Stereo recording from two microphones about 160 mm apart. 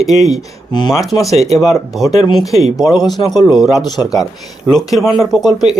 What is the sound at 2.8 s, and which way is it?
Speech, 25° left (ahead or behind).